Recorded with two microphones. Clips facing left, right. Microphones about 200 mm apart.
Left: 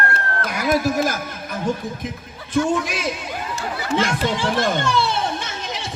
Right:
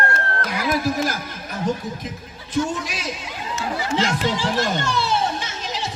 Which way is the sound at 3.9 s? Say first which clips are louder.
Left 2 dB; 55° left (ahead or behind).